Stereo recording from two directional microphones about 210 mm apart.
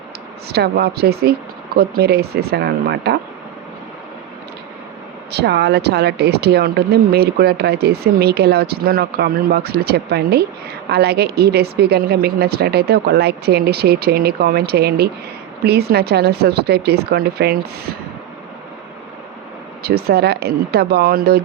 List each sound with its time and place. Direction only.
0.4 s speech: 50° right (ahead or behind)
5.3 s speech: 50° right (ahead or behind)
19.8 s speech: 50° right (ahead or behind)